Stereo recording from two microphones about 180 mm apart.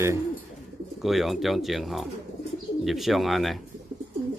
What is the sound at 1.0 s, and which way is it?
Speech, centre (ahead or behind).